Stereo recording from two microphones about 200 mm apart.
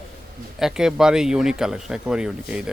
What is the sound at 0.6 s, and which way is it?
Speech, 5° right (ahead or behind).